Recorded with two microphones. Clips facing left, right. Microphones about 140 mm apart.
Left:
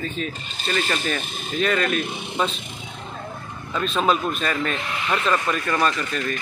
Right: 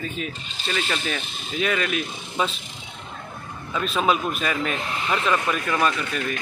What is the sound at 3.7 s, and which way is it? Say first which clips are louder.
Speech: left 1 dB; 5° right (ahead or behind).